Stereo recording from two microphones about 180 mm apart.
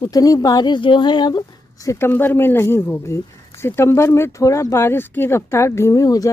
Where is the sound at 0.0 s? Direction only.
20° left (ahead or behind).